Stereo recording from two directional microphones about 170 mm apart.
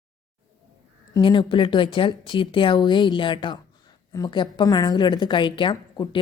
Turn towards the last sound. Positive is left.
turn(degrees=30)  # may be behind; listen again after turning